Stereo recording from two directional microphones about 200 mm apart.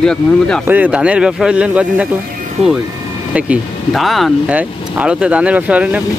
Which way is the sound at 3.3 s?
5° right (ahead or behind).